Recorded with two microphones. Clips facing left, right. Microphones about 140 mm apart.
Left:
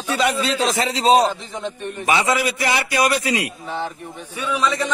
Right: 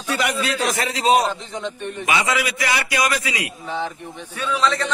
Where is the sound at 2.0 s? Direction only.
35° left (ahead or behind).